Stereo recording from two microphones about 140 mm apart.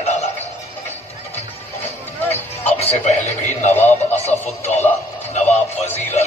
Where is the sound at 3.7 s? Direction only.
15° left (ahead or behind).